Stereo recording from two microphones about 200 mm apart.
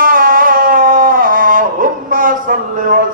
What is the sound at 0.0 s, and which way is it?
Music, 45° right (ahead or behind).